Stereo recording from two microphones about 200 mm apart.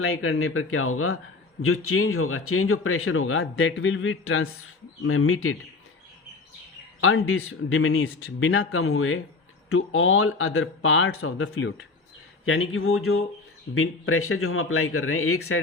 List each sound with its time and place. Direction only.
0.0 s speech: 90° left
7.0 s speech: 90° left